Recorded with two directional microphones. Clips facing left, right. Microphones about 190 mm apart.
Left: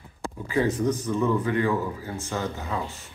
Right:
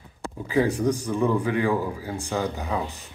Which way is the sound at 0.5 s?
10° right (ahead or behind).